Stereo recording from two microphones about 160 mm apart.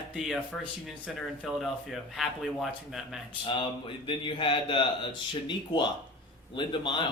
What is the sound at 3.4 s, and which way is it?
A man's voice, 30° left (ahead or behind).